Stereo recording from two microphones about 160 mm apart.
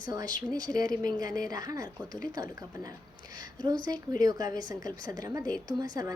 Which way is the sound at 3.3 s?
25° right (ahead or behind).